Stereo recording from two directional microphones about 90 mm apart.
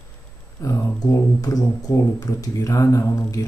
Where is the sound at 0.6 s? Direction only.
35° left (ahead or behind).